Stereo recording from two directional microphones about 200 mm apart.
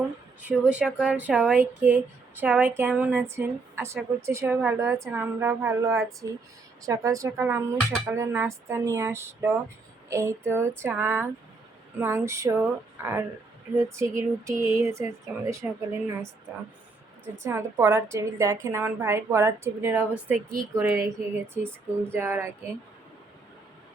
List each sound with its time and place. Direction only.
0.4 s speech: 5° right (ahead or behind)
17.3 s speech: 10° right (ahead or behind)